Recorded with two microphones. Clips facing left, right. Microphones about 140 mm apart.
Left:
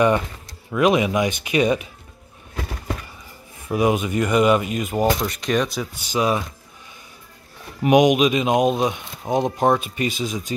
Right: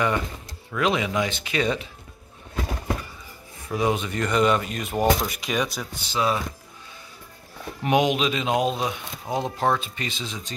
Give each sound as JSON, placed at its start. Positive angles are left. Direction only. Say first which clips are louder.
{"t": 0.7, "sound": "speech", "louder": "left 6 dB", "side_deg": 20}
{"t": 3.7, "sound": "speech", "louder": "left 5 dB", "side_deg": 10}
{"t": 5.9, "sound": "speech", "louder": "left 3 dB", "side_deg": 20}
{"t": 7.8, "sound": "speech", "louder": "left 6 dB", "side_deg": 15}